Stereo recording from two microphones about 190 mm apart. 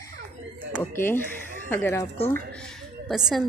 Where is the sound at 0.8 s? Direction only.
10° left (ahead or behind).